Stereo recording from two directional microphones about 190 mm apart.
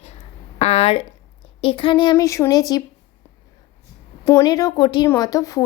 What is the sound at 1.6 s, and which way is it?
A woman's voice, 30° left (ahead or behind).